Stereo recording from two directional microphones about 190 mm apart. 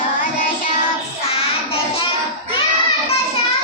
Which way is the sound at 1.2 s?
30° left (ahead or behind).